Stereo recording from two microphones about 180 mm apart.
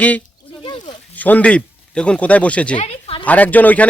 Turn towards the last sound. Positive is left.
turn(degrees=10)  # may be behind; listen again after turning